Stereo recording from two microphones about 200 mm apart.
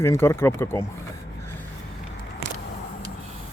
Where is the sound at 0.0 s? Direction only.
15° left (ahead or behind).